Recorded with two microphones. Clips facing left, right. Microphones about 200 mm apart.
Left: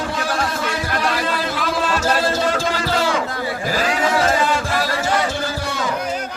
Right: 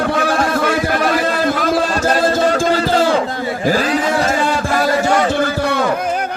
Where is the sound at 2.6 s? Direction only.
35° right (ahead or behind).